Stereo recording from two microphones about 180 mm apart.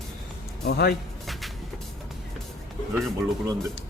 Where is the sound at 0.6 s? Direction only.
65° left (ahead or behind).